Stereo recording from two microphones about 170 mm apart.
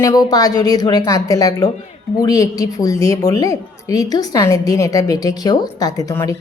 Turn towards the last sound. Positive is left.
turn(degrees=15)  # may be behind; listen again after turning